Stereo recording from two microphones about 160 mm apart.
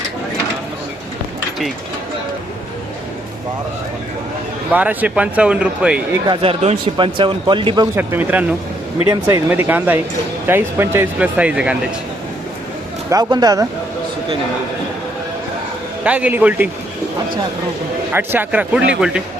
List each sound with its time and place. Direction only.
4.7 s speech: 10° right (ahead or behind)
6.2 s speech: 30° right (ahead or behind)
7.9 s speech: 10° right (ahead or behind)
13.1 s speech: 25° right (ahead or behind)
16.0 s speech: 10° right (ahead or behind)
18.1 s speech: 15° right (ahead or behind)